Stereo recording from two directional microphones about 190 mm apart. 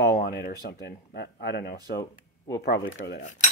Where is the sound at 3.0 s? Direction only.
55° left (ahead or behind).